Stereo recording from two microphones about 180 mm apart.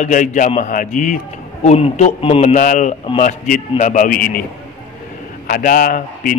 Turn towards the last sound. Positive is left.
turn(degrees=50)  # may be behind; listen again after turning